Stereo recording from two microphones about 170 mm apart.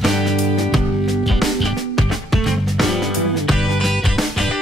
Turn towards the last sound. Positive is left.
turn(degrees=0)  # may be behind; listen again after turning